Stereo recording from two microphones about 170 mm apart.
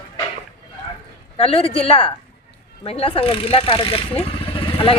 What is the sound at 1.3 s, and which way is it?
Speech, 35° left (ahead or behind).